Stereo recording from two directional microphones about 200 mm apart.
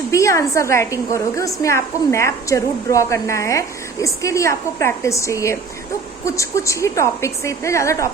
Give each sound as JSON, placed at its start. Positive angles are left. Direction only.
{"t": 0.1, "sound": "a woman's voice", "side_deg": 15}